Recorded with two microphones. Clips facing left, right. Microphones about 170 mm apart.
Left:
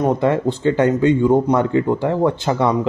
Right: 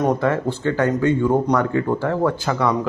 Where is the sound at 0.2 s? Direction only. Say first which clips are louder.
Left 3 dB; 20° left (ahead or behind).